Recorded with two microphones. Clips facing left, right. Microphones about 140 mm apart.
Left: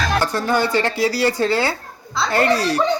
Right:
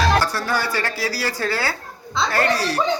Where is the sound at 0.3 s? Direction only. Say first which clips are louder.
Left 4 dB; 20° left (ahead or behind).